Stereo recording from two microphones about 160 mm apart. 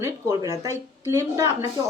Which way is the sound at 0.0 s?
15° right (ahead or behind).